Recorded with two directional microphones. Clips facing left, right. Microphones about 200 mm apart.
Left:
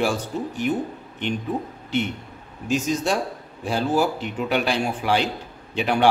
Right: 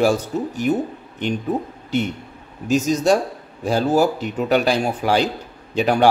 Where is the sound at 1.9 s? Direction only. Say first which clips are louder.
Right 3 dB; 40° right (ahead or behind).